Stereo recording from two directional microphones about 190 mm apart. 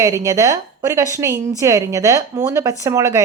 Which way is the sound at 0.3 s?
15° right (ahead or behind).